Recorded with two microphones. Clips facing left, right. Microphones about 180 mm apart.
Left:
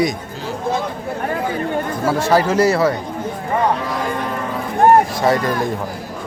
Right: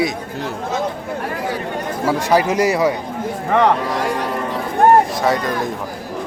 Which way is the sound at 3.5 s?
80° right.